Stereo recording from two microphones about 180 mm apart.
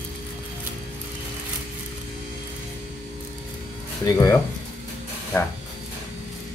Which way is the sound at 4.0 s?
20° left (ahead or behind).